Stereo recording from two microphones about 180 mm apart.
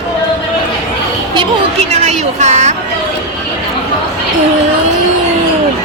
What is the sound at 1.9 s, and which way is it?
Speech, 40° right (ahead or behind).